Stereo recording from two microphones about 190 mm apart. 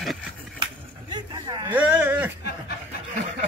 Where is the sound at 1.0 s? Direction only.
25° right (ahead or behind).